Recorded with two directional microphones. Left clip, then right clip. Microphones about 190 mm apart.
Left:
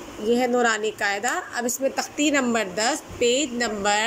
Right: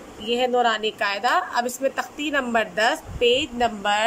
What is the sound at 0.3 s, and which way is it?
A woman's voice, 10° right (ahead or behind).